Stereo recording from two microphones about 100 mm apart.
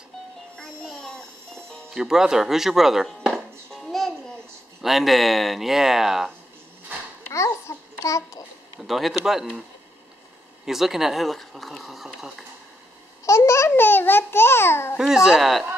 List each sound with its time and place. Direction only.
0.6 s music: 5° left (ahead or behind)
2.0 s chop: 5° right (ahead or behind)
4.8 s speech: centre (ahead or behind)
7.3 s babbling: 30° left (ahead or behind)
8.7 s speech: centre (ahead or behind)
10.6 s speech: 5° right (ahead or behind)
13.2 s a child's voice: 30° left (ahead or behind)
15.0 s speech: 5° right (ahead or behind)